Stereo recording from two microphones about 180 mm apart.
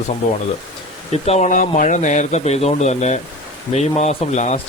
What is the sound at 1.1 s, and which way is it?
Speech, 35° left (ahead or behind).